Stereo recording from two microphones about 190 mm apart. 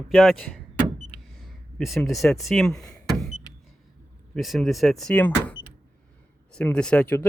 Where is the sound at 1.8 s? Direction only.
Centre (ahead or behind).